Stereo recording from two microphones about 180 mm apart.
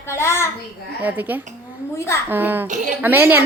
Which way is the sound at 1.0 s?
10° right (ahead or behind).